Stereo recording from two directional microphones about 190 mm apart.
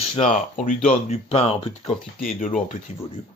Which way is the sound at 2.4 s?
40° left (ahead or behind).